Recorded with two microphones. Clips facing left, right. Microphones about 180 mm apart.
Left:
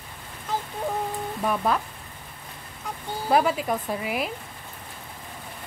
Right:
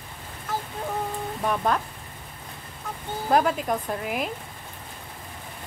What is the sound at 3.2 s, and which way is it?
Speech, 5° left (ahead or behind).